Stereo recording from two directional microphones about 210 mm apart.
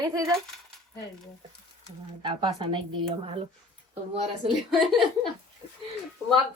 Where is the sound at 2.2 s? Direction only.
20° right (ahead or behind).